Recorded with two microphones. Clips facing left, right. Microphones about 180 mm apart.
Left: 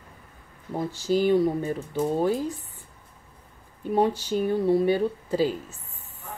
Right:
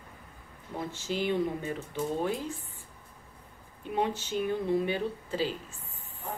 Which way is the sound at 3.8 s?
40° left (ahead or behind).